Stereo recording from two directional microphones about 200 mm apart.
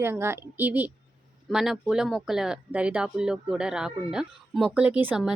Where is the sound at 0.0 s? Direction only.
10° right (ahead or behind).